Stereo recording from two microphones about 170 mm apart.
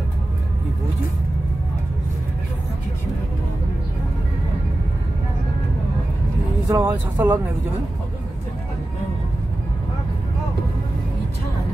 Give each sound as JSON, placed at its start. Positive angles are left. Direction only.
{"t": 6.7, "sound": "speech", "side_deg": -10}